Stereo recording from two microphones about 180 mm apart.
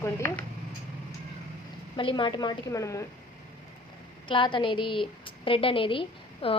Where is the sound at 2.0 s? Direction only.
30° left (ahead or behind).